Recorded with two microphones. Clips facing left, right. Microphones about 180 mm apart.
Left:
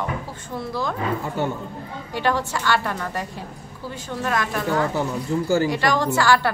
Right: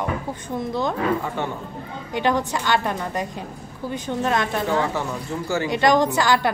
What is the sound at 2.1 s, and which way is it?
A woman's voice, 20° right (ahead or behind).